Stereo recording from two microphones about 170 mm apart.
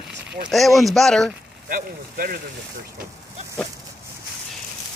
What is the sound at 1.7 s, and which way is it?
Speech, 55° right (ahead or behind).